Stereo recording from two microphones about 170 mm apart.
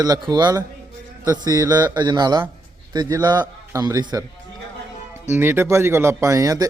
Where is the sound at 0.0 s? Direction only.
25° right (ahead or behind).